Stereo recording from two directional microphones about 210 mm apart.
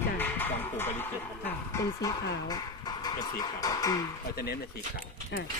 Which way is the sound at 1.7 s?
15° left (ahead or behind).